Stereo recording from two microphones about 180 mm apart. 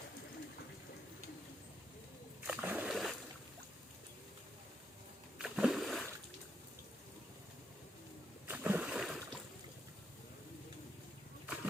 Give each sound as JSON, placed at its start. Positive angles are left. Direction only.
{"t": 2.4, "sound": "splash", "side_deg": -10}
{"t": 5.4, "sound": "splash", "side_deg": -5}
{"t": 8.4, "sound": "rowboat", "side_deg": -10}
{"t": 11.4, "sound": "a sound", "side_deg": -10}